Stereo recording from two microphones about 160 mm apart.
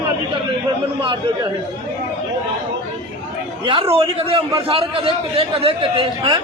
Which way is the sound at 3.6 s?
35° right (ahead or behind).